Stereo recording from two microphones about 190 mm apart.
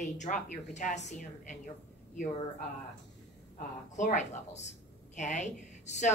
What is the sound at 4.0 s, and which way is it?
A woman's voice, 40° left (ahead or behind).